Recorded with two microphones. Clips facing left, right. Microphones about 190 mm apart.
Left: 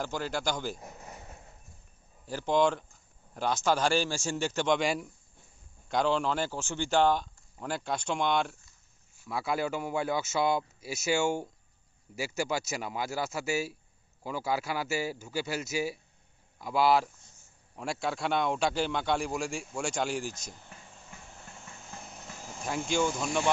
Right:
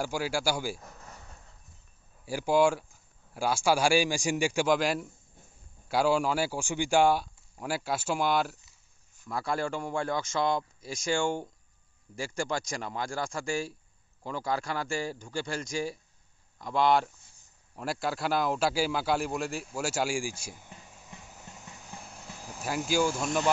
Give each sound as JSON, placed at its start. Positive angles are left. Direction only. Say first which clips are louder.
{"t": 0.0, "sound": "speech", "louder": "right 2 dB", "side_deg": -10}
{"t": 0.7, "sound": "a sound", "louder": "left 3 dB", "side_deg": 20}
{"t": 2.2, "sound": "a man's voice", "louder": "right 2 dB", "side_deg": -10}
{"t": 21.2, "sound": "vehicle", "louder": "right 1 dB", "side_deg": -5}